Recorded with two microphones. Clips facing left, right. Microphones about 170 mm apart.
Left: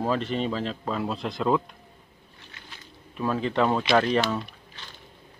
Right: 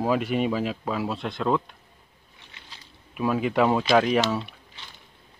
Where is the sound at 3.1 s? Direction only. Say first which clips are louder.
Right 2 dB; 10° right (ahead or behind).